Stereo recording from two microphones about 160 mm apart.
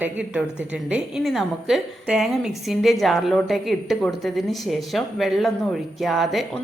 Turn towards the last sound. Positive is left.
turn(degrees=0)  # may be behind; listen again after turning